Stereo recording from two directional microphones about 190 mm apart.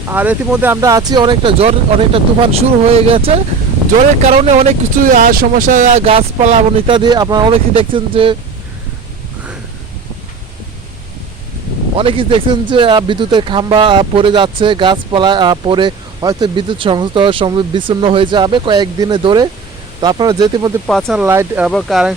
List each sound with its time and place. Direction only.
0.1 s speech: 10° right (ahead or behind); by 6.9 s 35° right (ahead or behind)
6.9 s speech: 20° right (ahead or behind)
11.9 s speech: 30° right (ahead or behind)
20.8 s speech: centre (ahead or behind)
21.7 s speech: centre (ahead or behind)